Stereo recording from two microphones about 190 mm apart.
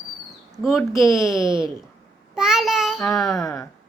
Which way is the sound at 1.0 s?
15° left (ahead or behind).